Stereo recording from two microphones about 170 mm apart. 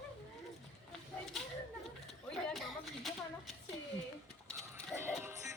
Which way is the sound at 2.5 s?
Centre (ahead or behind).